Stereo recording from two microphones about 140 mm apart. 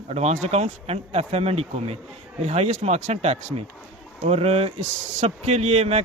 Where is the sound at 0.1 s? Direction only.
50° right (ahead or behind).